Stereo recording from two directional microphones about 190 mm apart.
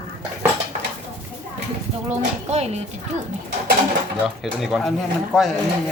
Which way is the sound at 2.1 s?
35° right (ahead or behind).